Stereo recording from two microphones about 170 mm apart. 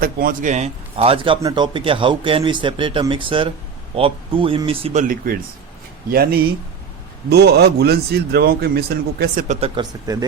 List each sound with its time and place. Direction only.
0.0 s a man's voice: 55° right (ahead or behind); by 5.0 s 35° right (ahead or behind)
5.0 s a man's voice: 55° right (ahead or behind)
9.6 s speech: 35° right (ahead or behind)
10.1 s speech: 20° right (ahead or behind)